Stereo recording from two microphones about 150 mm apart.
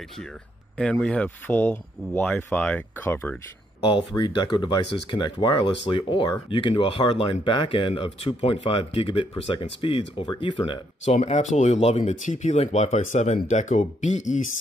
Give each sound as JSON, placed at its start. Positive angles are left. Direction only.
{"t": 0.7, "sound": "speech", "side_deg": 5}
{"t": 3.8, "sound": "speech", "side_deg": 30}
{"t": 11.1, "sound": "speech", "side_deg": 45}